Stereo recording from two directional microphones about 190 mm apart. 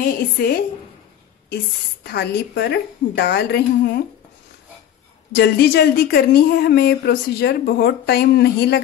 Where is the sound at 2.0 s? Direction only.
60° left (ahead or behind).